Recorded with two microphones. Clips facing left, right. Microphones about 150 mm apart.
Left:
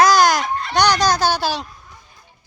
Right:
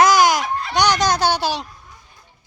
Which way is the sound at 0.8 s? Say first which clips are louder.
Left 1 dB; 20° right (ahead or behind).